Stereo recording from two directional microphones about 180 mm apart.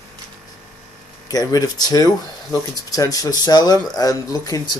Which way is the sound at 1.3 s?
20° left (ahead or behind).